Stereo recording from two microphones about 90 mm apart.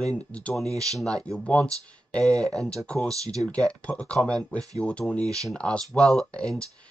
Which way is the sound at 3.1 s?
40° right (ahead or behind).